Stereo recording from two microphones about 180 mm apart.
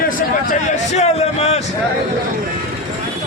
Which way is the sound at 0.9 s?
35° left (ahead or behind).